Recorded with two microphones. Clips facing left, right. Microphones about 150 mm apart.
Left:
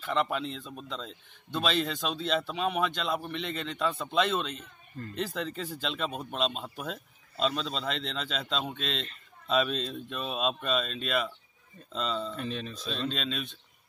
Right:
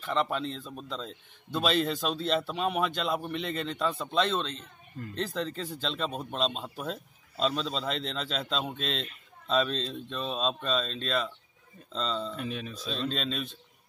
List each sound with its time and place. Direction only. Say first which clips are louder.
0.0 s speech: even; centre (ahead or behind)
9.5 s speech: even; 5° left (ahead or behind)